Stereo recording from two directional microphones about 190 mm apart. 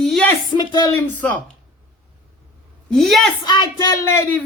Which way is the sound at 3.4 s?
20° left (ahead or behind).